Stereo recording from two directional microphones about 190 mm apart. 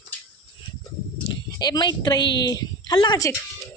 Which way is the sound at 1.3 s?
20° left (ahead or behind).